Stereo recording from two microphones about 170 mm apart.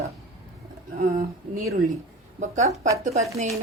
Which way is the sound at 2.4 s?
45° right (ahead or behind).